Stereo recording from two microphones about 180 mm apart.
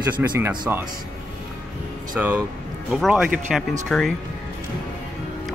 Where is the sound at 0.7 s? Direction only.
10° right (ahead or behind).